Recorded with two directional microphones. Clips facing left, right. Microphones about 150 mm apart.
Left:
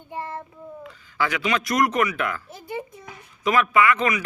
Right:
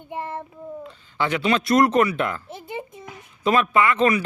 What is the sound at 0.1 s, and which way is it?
Child singing, 20° right (ahead or behind).